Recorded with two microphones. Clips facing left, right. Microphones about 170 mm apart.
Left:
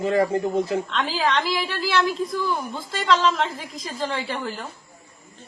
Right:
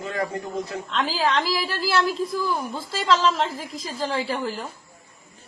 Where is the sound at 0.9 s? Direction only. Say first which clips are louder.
Right 5 dB; centre (ahead or behind).